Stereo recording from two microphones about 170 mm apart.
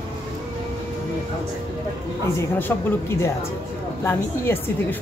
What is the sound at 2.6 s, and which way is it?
Speech, 15° left (ahead or behind).